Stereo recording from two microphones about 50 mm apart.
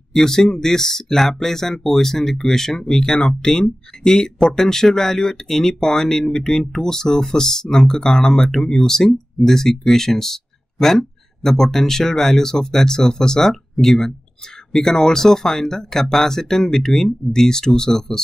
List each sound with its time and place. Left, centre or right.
0.1 s speech: centre